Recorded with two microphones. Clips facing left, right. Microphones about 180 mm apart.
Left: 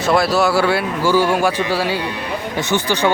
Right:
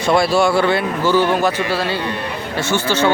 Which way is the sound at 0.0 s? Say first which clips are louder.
Right 1 dB; centre (ahead or behind).